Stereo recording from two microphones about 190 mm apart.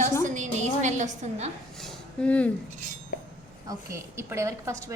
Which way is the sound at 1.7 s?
5° left (ahead or behind).